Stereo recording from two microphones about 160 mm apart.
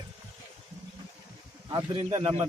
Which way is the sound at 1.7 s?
25° right (ahead or behind).